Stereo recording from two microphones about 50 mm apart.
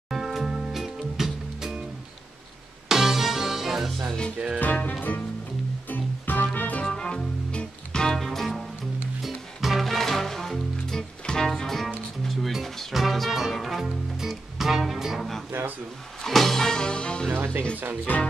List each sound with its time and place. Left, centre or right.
0.1 s music: centre
2.9 s music: centre
4.6 s speech: left
5.9 s music: left
6.8 s music: centre
8.2 s music: centre
17.3 s speech: right
18.1 s speech: left